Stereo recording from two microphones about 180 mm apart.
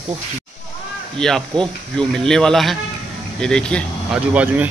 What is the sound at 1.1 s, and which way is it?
Speech, 5° left (ahead or behind).